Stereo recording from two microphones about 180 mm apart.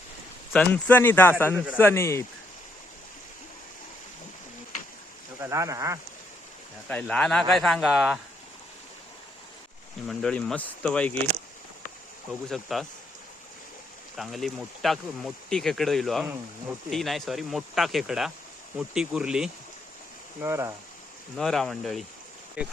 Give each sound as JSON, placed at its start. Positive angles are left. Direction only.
{"t": 0.5, "sound": "speech", "side_deg": 10}
{"t": 1.5, "sound": "speech", "side_deg": -5}
{"t": 1.8, "sound": "speech", "side_deg": 15}
{"t": 5.4, "sound": "speech", "side_deg": -15}
{"t": 6.8, "sound": "speech", "side_deg": 5}
{"t": 10.1, "sound": "speech", "side_deg": 0}
{"t": 12.3, "sound": "speech", "side_deg": 0}
{"t": 14.2, "sound": "speech", "side_deg": 0}
{"t": 20.4, "sound": "speech", "side_deg": -15}
{"t": 21.3, "sound": "speech", "side_deg": 0}